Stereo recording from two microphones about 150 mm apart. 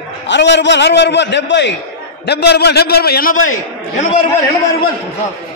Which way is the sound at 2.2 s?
90° left.